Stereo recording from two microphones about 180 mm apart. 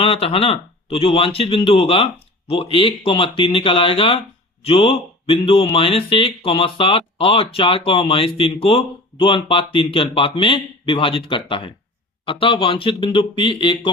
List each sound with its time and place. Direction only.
0.0 s speech: 30° left (ahead or behind)